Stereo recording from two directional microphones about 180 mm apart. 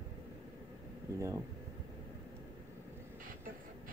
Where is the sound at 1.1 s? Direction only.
15° right (ahead or behind).